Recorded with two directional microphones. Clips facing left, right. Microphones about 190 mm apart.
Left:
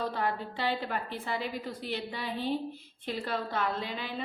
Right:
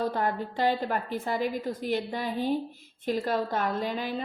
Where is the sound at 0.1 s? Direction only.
45° right (ahead or behind).